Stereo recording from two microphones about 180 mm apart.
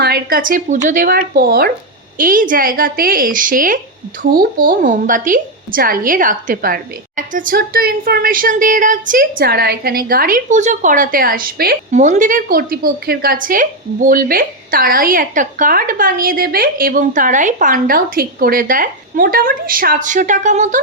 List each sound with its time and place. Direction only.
0.0 s a woman's voice: 60° right (ahead or behind)
11.9 s a woman's voice: 45° right (ahead or behind)